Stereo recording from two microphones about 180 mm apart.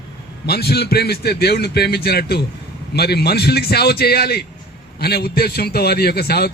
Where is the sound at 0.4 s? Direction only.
65° left (ahead or behind).